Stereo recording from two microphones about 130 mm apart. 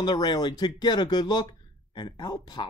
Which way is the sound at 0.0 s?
35° left (ahead or behind).